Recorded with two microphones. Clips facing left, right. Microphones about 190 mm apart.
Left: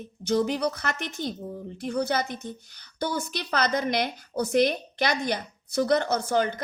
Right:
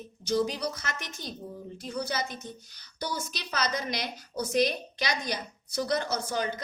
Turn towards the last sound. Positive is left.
turn(degrees=55)  # may be behind; listen again after turning